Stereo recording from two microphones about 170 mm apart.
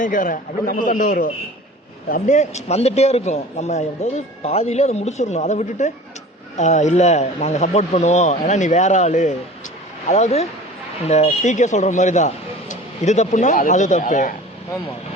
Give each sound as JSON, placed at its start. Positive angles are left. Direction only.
{"t": 0.0, "sound": "a man's voice", "side_deg": 50}